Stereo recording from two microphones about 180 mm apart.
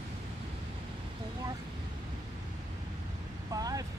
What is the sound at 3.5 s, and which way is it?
Vehicle, 20° right (ahead or behind).